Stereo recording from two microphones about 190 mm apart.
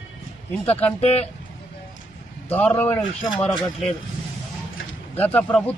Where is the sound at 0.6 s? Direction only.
30° left (ahead or behind).